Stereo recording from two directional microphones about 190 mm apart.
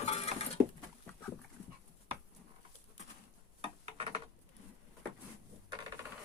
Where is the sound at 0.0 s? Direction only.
35° left (ahead or behind).